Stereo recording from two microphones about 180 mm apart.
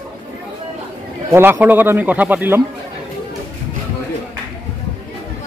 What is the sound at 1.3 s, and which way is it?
Speech, 10° right (ahead or behind).